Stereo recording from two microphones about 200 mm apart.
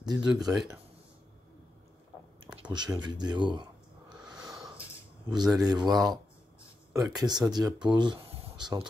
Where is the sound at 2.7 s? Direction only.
20° right (ahead or behind).